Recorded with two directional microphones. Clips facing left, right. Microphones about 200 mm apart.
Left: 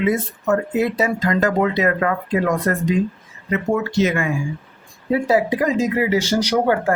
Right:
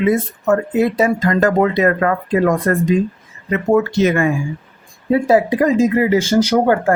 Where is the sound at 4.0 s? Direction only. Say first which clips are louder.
Right 4 dB; 55° right (ahead or behind).